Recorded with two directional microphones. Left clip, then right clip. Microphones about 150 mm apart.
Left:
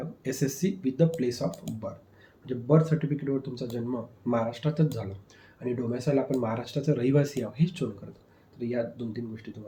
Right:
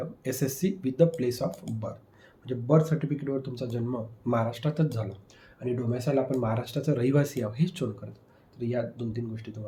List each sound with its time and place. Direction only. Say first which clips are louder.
0.0 s speech: even; 35° right (ahead or behind)